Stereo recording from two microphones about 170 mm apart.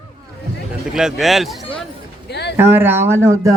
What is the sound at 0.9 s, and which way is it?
Speech, centre (ahead or behind).